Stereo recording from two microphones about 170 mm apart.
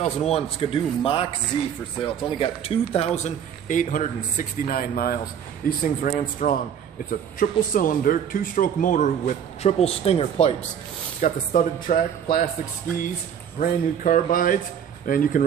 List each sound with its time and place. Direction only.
0.3 s speech: 30° left (ahead or behind)
3.3 s a man's voice: 50° left (ahead or behind)
11.1 s a man's voice: 50° left (ahead or behind)
13.6 s a man's voice: 50° left (ahead or behind)